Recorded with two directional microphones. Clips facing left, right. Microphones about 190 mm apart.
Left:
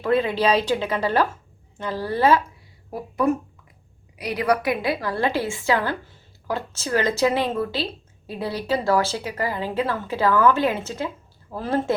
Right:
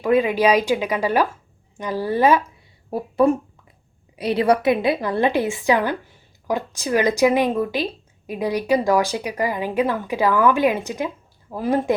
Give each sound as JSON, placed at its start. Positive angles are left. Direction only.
{"t": 0.0, "sound": "a woman's voice", "side_deg": -15}
{"t": 2.9, "sound": "a woman's voice", "side_deg": -30}